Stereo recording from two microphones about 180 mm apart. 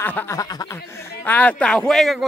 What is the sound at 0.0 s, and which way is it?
Speech, 10° left (ahead or behind).